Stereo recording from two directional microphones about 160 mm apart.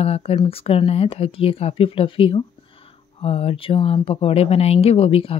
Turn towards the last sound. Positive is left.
turn(degrees=35)  # may be behind; listen again after turning